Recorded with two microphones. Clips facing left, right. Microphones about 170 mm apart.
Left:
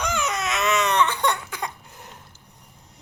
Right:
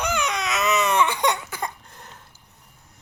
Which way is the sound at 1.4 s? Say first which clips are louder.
Right 1 dB; 5° right (ahead or behind).